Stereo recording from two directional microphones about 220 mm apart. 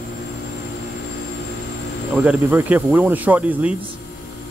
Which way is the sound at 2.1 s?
5° right (ahead or behind).